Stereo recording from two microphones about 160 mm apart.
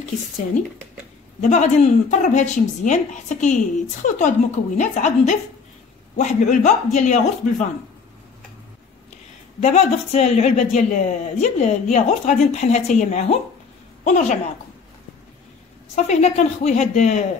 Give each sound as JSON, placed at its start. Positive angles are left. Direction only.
{"t": 1.4, "sound": "speech", "side_deg": 50}
{"t": 9.6, "sound": "speech", "side_deg": 45}
{"t": 15.9, "sound": "speech", "side_deg": 45}